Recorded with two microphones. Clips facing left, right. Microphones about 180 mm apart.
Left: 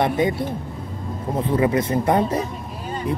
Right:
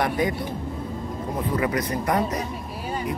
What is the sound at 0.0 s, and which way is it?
A man's voice, 25° left (ahead or behind).